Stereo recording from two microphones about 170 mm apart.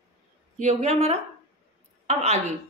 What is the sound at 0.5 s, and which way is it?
A woman's voice, 40° right (ahead or behind).